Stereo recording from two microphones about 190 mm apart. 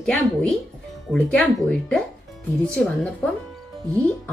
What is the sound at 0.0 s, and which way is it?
A child's voice, 5° left (ahead or behind).